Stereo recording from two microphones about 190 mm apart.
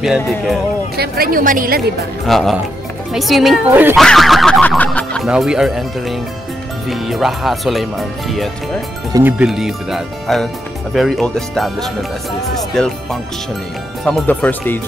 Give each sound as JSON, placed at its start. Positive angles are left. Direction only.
{"t": 0.9, "sound": "a woman's voice", "side_deg": -55}
{"t": 2.2, "sound": "speech", "side_deg": 0}